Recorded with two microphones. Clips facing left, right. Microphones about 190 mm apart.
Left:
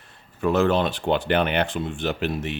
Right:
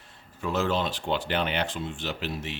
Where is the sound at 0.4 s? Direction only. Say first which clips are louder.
Left 7 dB; 60° left (ahead or behind).